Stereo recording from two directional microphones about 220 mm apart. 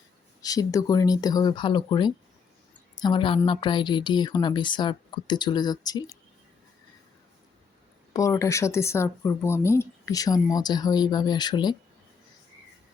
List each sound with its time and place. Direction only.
0.4 s a woman's voice: 15° left (ahead or behind)
8.1 s speech: 15° left (ahead or behind)